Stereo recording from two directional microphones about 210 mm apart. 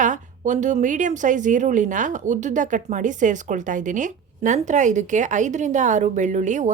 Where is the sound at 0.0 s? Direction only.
35° right (ahead or behind).